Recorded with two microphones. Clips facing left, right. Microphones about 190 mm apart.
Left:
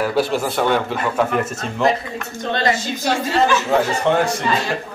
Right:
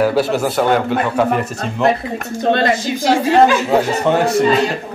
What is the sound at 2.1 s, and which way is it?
Speech, 55° right (ahead or behind).